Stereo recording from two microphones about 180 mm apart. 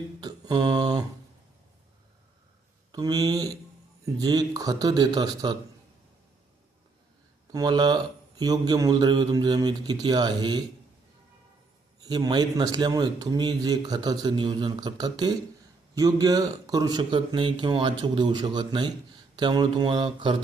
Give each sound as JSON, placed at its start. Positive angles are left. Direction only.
{"t": 0.2, "sound": "a sound", "side_deg": -25}
{"t": 2.9, "sound": "a man's voice", "side_deg": -20}
{"t": 7.5, "sound": "a man's voice", "side_deg": -25}
{"t": 12.0, "sound": "a man's voice", "side_deg": -25}